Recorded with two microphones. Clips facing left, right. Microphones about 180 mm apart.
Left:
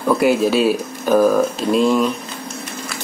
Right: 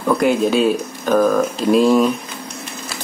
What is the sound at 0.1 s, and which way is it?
Speech, 5° left (ahead or behind).